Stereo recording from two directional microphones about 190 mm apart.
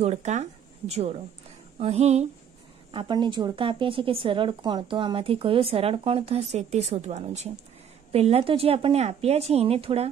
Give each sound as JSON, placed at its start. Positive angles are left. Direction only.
{"t": 0.0, "sound": "a woman's voice", "side_deg": -35}
{"t": 2.9, "sound": "a woman's voice", "side_deg": -25}